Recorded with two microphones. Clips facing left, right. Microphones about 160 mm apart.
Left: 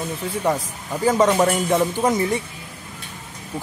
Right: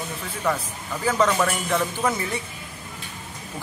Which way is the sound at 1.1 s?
20° left (ahead or behind).